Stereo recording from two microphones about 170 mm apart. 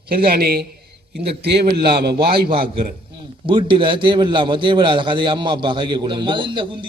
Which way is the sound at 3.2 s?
30° right (ahead or behind).